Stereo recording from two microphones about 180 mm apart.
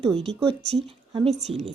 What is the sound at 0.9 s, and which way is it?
Speech, 35° right (ahead or behind).